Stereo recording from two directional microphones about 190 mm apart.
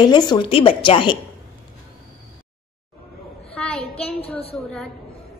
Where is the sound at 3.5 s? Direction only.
5° left (ahead or behind).